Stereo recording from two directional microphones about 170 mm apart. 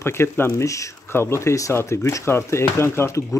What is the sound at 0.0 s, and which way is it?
Speech, 15° left (ahead or behind).